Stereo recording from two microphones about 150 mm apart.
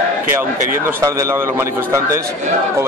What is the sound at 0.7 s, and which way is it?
Speech, 65° right (ahead or behind).